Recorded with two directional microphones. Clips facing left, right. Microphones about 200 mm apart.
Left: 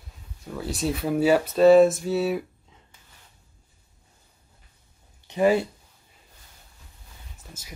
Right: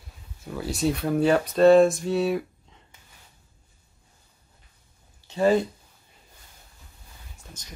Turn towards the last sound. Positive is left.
turn(degrees=5)  # may be behind; listen again after turning